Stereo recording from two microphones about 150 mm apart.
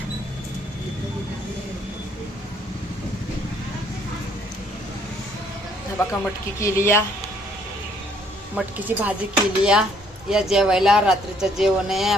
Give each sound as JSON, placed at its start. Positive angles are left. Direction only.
{"t": 6.6, "sound": "speech", "side_deg": 20}
{"t": 8.5, "sound": "speech", "side_deg": -10}